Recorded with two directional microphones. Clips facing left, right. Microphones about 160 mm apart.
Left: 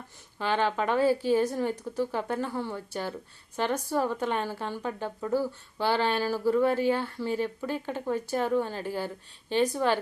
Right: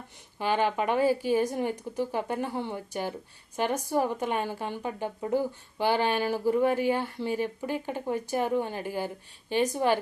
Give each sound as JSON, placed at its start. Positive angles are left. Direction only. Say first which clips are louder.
{"t": 0.3, "sound": "a woman's voice", "louder": "right 1 dB", "side_deg": -10}